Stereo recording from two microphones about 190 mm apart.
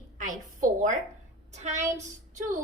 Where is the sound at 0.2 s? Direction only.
45° right (ahead or behind).